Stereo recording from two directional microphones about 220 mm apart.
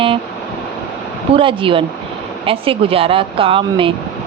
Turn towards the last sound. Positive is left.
turn(degrees=-25)  # may be behind; listen again after turning